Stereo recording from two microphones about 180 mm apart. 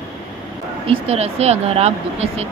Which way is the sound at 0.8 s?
35° right (ahead or behind).